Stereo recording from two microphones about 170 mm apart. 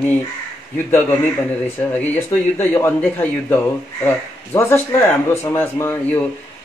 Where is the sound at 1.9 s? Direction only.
10° left (ahead or behind).